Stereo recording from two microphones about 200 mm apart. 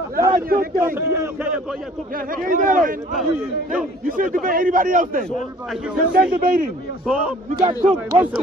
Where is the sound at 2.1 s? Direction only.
45° right (ahead or behind).